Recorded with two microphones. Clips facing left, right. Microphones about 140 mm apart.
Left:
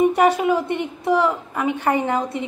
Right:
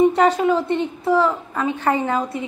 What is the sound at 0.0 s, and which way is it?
A woman's voice, 15° left (ahead or behind).